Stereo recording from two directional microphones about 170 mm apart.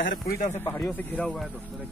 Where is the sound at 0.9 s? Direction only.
10° left (ahead or behind).